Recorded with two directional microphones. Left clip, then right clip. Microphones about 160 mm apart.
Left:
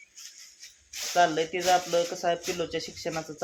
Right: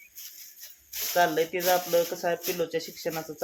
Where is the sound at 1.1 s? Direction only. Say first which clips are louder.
Even; 15° left (ahead or behind).